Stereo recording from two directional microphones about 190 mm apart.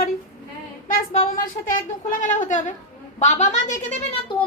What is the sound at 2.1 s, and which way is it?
A woman's voice, 40° left (ahead or behind).